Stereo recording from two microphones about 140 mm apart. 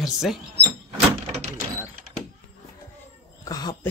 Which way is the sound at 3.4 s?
30° left (ahead or behind).